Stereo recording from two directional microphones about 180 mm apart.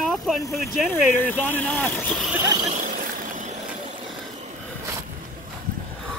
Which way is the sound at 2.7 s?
45° right (ahead or behind).